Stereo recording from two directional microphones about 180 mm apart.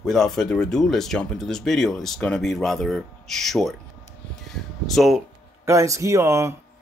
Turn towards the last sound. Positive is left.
turn(degrees=-15)  # may be behind; listen again after turning